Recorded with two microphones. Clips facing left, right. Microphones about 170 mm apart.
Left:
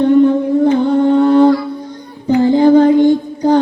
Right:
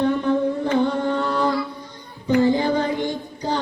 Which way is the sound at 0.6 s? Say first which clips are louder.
Left 9 dB; 50° left (ahead or behind).